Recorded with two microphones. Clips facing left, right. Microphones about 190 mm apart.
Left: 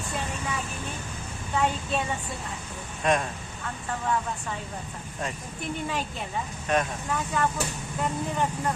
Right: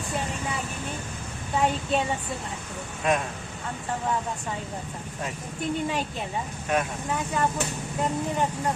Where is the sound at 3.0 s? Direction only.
5° right (ahead or behind).